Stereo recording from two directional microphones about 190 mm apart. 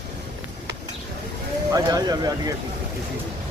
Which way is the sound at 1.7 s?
20° right (ahead or behind).